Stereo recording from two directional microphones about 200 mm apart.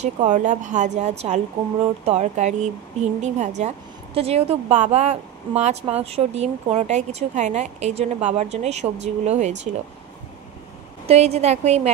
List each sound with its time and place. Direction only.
0.0 s speech: 35° right (ahead or behind)
11.1 s speech: 30° right (ahead or behind)